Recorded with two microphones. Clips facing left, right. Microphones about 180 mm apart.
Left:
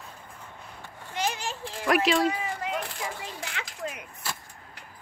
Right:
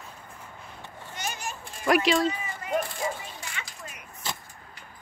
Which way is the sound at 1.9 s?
Centre (ahead or behind).